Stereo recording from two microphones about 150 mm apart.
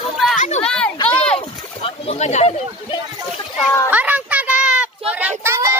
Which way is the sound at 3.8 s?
10° right (ahead or behind).